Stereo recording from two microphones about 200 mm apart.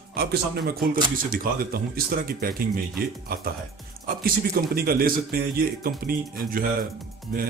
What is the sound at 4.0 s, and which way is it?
A man's voice, 45° right (ahead or behind).